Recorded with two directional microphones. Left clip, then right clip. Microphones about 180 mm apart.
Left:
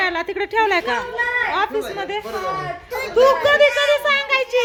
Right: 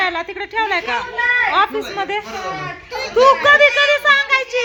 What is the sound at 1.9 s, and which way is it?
A child's voice, 10° right (ahead or behind).